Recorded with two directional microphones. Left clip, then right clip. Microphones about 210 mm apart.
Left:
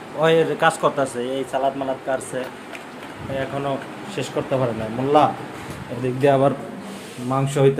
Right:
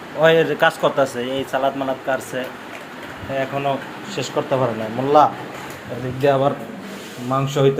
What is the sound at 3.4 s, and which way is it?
Speech, 5° left (ahead or behind).